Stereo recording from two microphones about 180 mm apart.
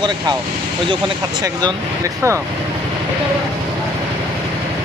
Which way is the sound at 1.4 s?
20° right (ahead or behind).